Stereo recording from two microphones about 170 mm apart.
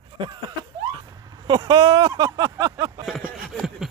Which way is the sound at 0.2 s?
30° right (ahead or behind).